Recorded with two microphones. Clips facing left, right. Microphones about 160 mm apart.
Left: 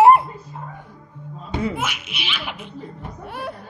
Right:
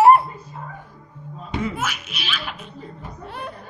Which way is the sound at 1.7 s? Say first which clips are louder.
Left 1 dB; 15° left (ahead or behind).